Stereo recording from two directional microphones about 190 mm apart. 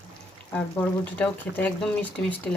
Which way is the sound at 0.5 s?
5° left (ahead or behind).